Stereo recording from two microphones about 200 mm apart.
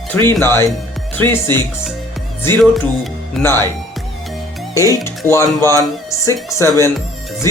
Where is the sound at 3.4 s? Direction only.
10° left (ahead or behind).